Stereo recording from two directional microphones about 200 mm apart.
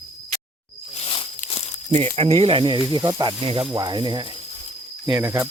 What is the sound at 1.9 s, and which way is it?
Speech, 30° right (ahead or behind).